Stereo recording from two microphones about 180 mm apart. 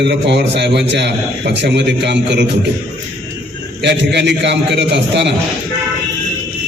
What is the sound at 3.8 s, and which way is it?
A man's voice, 75° right (ahead or behind).